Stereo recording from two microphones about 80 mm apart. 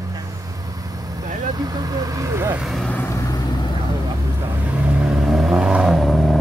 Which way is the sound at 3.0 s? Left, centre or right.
Left.